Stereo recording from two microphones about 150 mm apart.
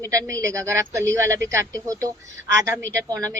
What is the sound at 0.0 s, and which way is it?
Speech, 20° right (ahead or behind).